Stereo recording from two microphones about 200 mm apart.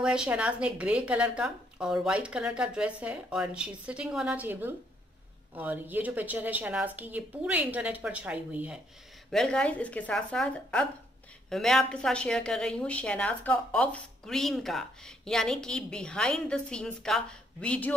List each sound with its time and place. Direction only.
0.0 s a woman's voice: 5° right (ahead or behind)